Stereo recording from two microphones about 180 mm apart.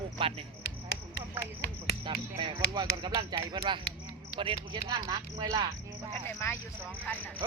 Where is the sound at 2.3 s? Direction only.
25° right (ahead or behind).